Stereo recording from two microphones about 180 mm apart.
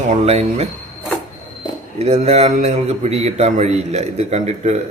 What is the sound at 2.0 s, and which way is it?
A man's voice, 35° right (ahead or behind).